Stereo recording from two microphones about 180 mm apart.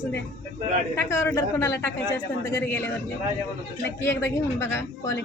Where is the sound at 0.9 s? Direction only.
15° left (ahead or behind).